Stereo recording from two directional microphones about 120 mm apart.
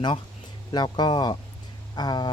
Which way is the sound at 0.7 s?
40° left (ahead or behind).